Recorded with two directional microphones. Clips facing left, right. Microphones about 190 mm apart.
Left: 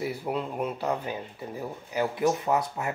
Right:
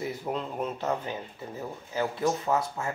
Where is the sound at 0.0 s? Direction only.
10° left (ahead or behind).